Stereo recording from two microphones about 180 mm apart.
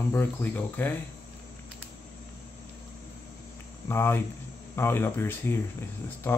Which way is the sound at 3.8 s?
15° left (ahead or behind).